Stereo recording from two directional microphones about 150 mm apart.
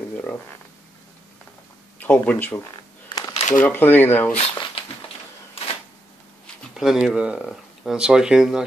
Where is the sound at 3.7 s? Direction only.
15° left (ahead or behind).